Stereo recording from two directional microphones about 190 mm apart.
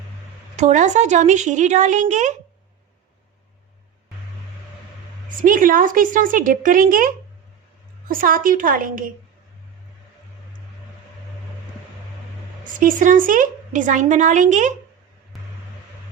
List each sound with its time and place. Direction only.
0.5 s a woman's voice: 40° right (ahead or behind)
5.4 s a woman's voice: 45° right (ahead or behind)
12.8 s a woman's voice: 45° right (ahead or behind)